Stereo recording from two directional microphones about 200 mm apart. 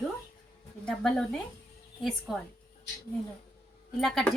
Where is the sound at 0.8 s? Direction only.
Centre (ahead or behind).